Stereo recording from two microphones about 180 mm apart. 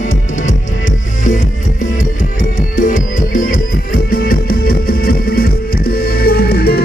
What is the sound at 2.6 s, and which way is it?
Music, 45° left (ahead or behind).